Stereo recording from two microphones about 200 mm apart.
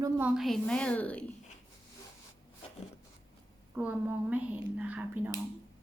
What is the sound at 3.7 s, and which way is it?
Speech, 10° right (ahead or behind).